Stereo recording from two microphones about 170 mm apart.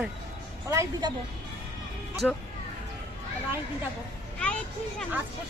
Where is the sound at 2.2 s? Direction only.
5° left (ahead or behind).